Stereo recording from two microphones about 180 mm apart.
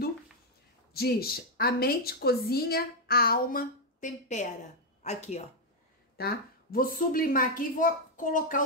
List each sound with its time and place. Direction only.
0.9 s a woman's voice: 60° left (ahead or behind); by 5.4 s 40° left (ahead or behind)
6.1 s a woman's voice: 55° left (ahead or behind)